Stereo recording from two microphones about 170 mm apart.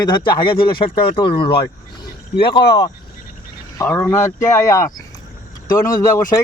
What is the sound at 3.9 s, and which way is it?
Speech, 10° left (ahead or behind).